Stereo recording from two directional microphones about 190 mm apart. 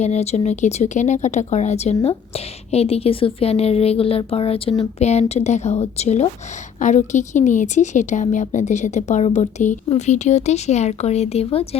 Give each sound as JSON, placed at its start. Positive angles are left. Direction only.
{"t": 0.0, "sound": "a woman's voice", "side_deg": 35}